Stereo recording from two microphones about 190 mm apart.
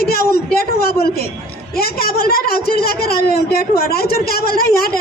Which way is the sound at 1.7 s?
50° left (ahead or behind).